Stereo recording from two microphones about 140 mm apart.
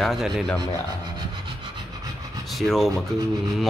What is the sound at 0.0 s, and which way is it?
Speech, centre (ahead or behind).